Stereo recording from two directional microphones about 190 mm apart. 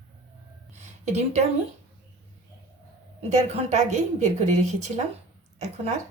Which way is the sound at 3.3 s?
35° right (ahead or behind).